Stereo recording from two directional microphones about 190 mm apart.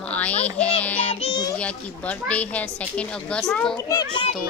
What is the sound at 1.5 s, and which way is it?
A woman's voice, 5° left (ahead or behind).